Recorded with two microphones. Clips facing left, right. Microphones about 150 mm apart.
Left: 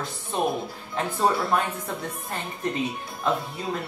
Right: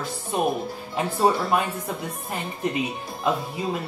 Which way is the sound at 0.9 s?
10° right (ahead or behind).